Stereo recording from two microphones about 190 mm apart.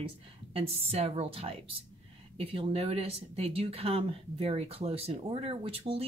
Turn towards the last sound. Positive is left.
turn(degrees=-30)  # may be behind; listen again after turning